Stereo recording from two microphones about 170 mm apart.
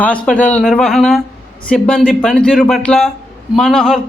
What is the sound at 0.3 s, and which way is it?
A man's voice, 10° left (ahead or behind).